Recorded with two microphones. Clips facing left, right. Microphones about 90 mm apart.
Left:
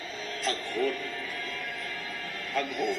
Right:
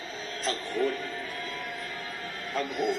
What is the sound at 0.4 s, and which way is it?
Speech, 25° right (ahead or behind).